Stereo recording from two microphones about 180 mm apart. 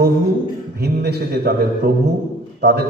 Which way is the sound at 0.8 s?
65° right (ahead or behind).